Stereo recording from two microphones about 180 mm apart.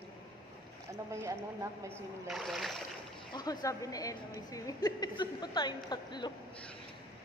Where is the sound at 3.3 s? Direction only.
20° left (ahead or behind).